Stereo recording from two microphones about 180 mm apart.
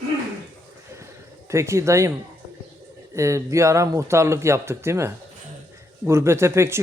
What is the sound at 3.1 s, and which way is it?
A man's voice, 15° right (ahead or behind).